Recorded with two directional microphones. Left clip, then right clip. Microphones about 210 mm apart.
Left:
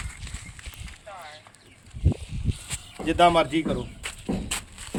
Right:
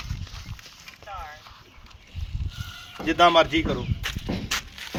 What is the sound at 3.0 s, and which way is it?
Speech, 35° left (ahead or behind).